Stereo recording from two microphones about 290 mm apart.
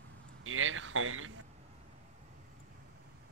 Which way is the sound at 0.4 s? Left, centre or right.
Right.